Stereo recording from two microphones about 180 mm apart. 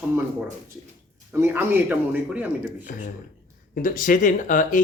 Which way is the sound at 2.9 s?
55° left (ahead or behind).